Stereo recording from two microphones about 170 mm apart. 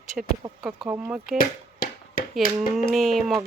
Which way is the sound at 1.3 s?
55° left (ahead or behind).